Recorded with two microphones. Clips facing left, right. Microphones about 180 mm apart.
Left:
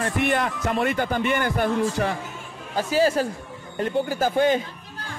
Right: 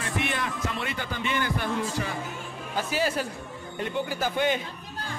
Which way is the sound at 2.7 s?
40° left (ahead or behind).